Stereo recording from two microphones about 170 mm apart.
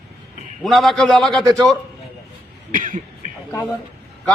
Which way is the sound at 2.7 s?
55° right (ahead or behind).